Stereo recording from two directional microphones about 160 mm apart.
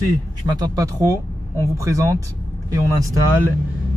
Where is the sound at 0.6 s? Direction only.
25° right (ahead or behind).